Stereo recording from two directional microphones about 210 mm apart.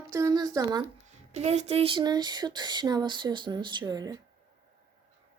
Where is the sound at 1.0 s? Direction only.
30° right (ahead or behind).